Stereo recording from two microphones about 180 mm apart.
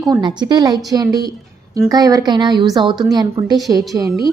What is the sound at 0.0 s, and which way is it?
A woman's voice, 25° right (ahead or behind).